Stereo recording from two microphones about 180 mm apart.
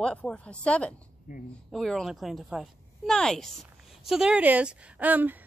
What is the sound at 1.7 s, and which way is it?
Speech, centre (ahead or behind).